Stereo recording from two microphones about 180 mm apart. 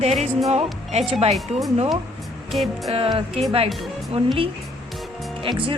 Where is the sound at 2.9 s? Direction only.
30° right (ahead or behind).